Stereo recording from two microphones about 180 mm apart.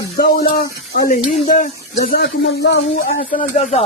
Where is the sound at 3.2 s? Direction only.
40° left (ahead or behind).